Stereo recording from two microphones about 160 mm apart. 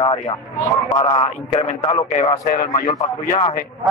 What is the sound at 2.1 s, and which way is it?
Speech, 50° left (ahead or behind).